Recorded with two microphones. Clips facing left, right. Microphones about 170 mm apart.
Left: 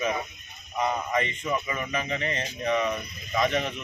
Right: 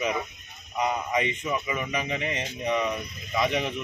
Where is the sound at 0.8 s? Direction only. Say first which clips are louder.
Even; 15° right (ahead or behind).